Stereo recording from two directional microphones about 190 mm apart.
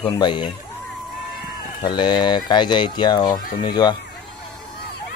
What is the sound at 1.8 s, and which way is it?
Speech, 25° left (ahead or behind).